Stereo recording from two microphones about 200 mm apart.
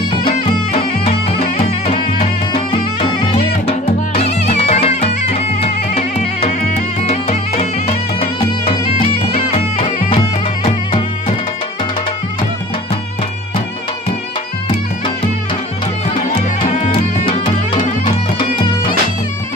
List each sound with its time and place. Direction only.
1.9 s music: 30° left (ahead or behind)
3.6 s music: 30° left (ahead or behind)
10.6 s music: 30° left (ahead or behind)
18.4 s music: 25° left (ahead or behind)